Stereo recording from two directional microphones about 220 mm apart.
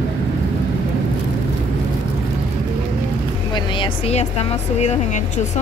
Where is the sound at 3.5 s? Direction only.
20° left (ahead or behind).